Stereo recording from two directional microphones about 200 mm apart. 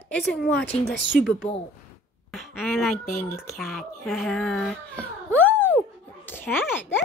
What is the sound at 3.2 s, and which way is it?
Speech, 10° left (ahead or behind).